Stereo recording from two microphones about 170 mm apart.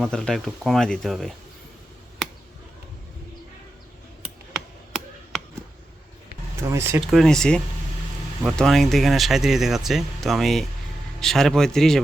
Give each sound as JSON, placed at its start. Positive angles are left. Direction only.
{"t": 0.0, "sound": "speech", "side_deg": 5}
{"t": 4.5, "sound": "chop", "side_deg": 0}
{"t": 6.6, "sound": "speech", "side_deg": -15}
{"t": 7.1, "sound": "speech", "side_deg": 0}